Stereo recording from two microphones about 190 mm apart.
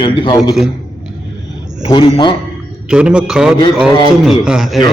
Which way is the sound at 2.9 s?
5° right (ahead or behind).